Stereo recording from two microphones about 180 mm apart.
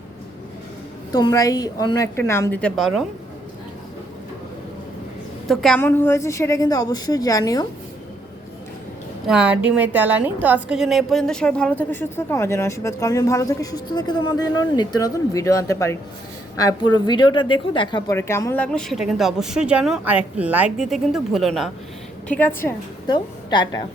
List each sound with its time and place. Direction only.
1.1 s a woman's voice: 20° left (ahead or behind); by 3.0 s centre (ahead or behind)
5.5 s speech: centre (ahead or behind)
5.8 s a woman's voice: 15° left (ahead or behind)
9.2 s a woman's voice: 5° right (ahead or behind); by 18.2 s 25° left (ahead or behind)
18.2 s speech: 15° left (ahead or behind); by 21.7 s centre (ahead or behind)
22.3 s a woman's voice: 10° left (ahead or behind)
23.0 s a woman's voice: 25° left (ahead or behind)